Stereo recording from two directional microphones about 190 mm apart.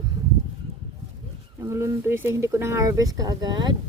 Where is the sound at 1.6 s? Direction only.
15° right (ahead or behind).